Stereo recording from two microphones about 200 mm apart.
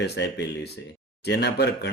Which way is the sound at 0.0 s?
60° left (ahead or behind).